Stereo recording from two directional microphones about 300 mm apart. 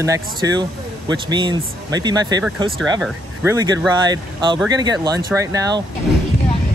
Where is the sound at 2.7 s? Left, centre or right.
Centre.